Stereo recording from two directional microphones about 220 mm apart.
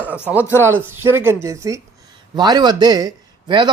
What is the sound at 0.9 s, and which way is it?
Speech, 10° right (ahead or behind).